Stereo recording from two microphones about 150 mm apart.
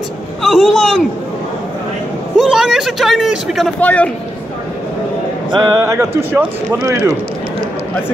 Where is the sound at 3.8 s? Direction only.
10° left (ahead or behind).